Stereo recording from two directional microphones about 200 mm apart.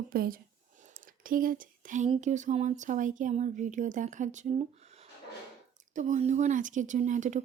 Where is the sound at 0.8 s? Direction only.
40° right (ahead or behind).